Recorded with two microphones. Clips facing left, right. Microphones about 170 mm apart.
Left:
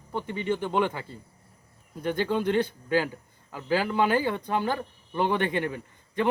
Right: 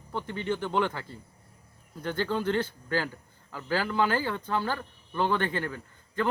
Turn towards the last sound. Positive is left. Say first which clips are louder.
# left 2 dB
turn(degrees=20)  # may be behind; listen again after turning